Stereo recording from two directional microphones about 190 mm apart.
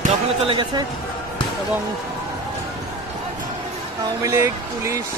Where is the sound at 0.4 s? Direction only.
25° right (ahead or behind).